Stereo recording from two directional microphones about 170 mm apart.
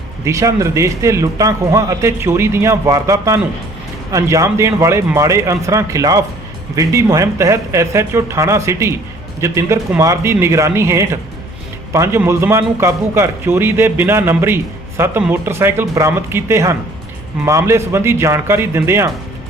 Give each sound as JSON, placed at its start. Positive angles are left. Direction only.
{"t": 0.3, "sound": "a man's voice", "side_deg": -20}